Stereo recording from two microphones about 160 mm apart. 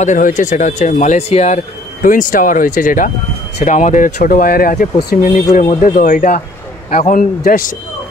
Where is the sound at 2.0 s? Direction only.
55° left (ahead or behind).